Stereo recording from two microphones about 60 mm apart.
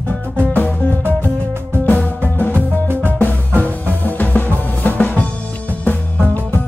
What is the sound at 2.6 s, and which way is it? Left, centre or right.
Music, right.